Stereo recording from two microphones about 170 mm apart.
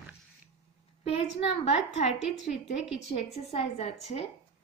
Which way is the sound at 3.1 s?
40° left (ahead or behind).